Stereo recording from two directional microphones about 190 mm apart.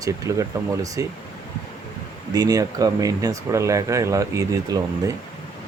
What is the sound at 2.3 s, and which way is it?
Speech, 20° right (ahead or behind).